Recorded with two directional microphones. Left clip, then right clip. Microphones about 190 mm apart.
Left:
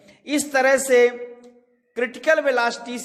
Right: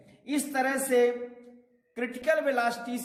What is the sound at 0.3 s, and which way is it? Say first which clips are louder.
A man's voice: left 10 dB; 30° left (ahead or behind).